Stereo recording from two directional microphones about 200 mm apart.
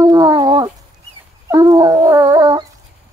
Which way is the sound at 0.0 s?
20° right (ahead or behind).